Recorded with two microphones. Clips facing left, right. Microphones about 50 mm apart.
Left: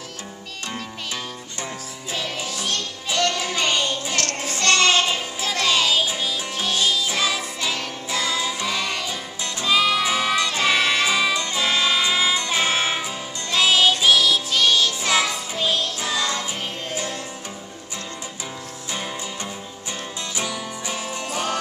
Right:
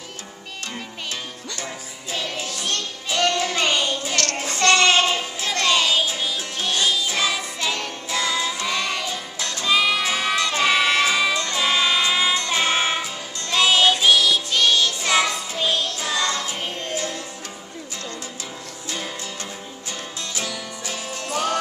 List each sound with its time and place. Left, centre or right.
2.1 s music: centre
3.5 s a sound: centre
4.6 s child singing: centre
5.4 s music: centre
10.0 s child singing: centre
10.6 s music: centre
20.3 s music: centre